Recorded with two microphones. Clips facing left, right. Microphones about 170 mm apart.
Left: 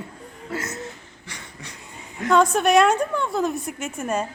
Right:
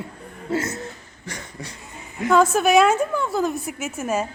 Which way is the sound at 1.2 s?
40° right (ahead or behind).